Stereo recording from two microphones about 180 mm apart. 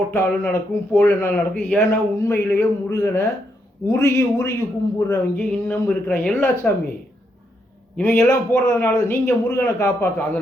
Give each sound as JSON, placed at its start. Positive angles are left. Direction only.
{"t": 0.1, "sound": "a man's voice", "side_deg": 15}
{"t": 7.9, "sound": "a man's voice", "side_deg": 15}